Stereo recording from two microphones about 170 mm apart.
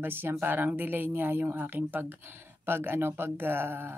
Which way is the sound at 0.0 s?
10° right (ahead or behind).